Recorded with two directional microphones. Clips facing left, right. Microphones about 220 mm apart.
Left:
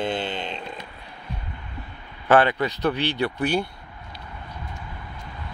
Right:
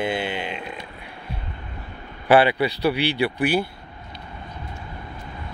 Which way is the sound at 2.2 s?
10° right (ahead or behind).